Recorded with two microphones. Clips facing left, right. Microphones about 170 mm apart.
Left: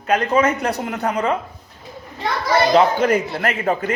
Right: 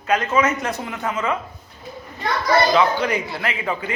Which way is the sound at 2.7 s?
45° left (ahead or behind).